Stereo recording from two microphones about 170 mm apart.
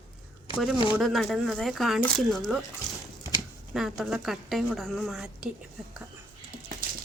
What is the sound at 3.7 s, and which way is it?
Speech, centre (ahead or behind).